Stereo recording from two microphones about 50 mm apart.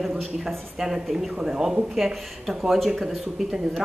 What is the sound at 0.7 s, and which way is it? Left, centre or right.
A woman's voice, centre.